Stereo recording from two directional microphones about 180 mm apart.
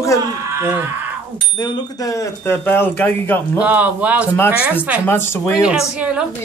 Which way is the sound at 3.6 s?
10° right (ahead or behind).